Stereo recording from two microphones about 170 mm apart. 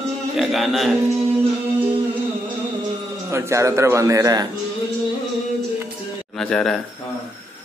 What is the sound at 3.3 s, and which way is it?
A man's voice, 15° right (ahead or behind).